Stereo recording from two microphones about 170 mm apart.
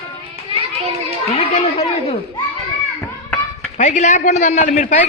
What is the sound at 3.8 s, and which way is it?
A man's voice, 45° left (ahead or behind).